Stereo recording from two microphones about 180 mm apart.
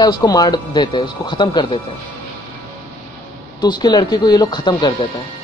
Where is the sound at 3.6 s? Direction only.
25° left (ahead or behind).